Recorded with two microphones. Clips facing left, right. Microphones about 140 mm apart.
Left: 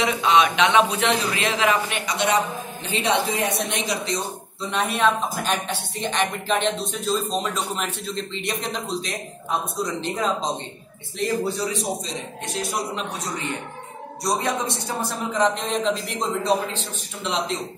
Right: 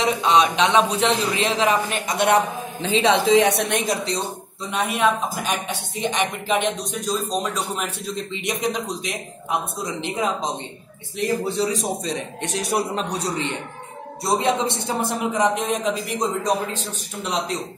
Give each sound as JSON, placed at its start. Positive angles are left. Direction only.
{"t": 0.0, "sound": "a man's voice", "side_deg": -35}
{"t": 2.0, "sound": "a man's voice", "side_deg": -55}
{"t": 3.6, "sound": "speech", "side_deg": -50}
{"t": 4.9, "sound": "a man's voice", "side_deg": -10}
{"t": 12.0, "sound": "a man's voice", "side_deg": -70}
{"t": 12.9, "sound": "a man's voice", "side_deg": -35}
{"t": 16.7, "sound": "a man's voice", "side_deg": -40}